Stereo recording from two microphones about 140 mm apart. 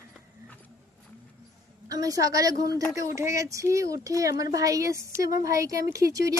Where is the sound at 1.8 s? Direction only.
25° right (ahead or behind).